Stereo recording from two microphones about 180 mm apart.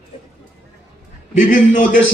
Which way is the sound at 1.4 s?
45° left (ahead or behind).